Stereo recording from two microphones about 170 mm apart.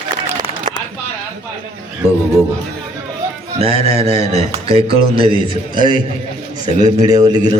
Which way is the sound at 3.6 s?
35° right (ahead or behind).